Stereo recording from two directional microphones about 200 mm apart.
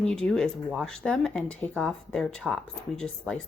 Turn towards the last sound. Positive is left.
turn(degrees=5)  # may be behind; listen again after turning